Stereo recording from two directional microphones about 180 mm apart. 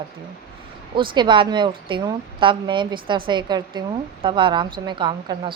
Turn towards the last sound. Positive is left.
turn(degrees=-25)  # may be behind; listen again after turning